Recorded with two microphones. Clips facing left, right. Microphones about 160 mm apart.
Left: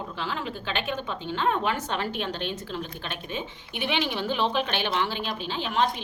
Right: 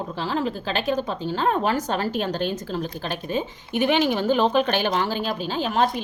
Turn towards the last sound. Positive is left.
turn(degrees=-40)  # may be behind; listen again after turning